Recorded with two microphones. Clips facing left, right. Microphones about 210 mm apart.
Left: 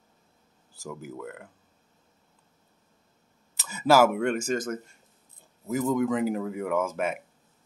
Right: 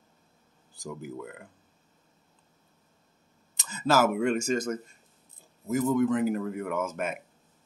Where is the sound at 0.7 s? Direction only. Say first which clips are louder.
Even; centre (ahead or behind).